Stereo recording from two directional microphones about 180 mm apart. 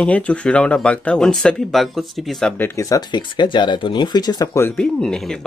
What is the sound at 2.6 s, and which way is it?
Speech, 15° left (ahead or behind).